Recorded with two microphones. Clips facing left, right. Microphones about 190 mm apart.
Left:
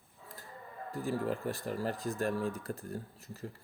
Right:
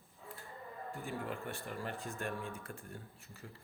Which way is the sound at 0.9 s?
35° left (ahead or behind).